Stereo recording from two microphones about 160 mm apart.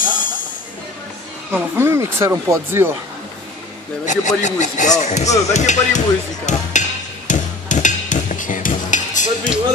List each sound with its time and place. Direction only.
0.0 s music: 55° left (ahead or behind)
1.5 s speech: 15° right (ahead or behind)
4.0 s speech: 50° left (ahead or behind)
7.2 s hammer: 50° left (ahead or behind)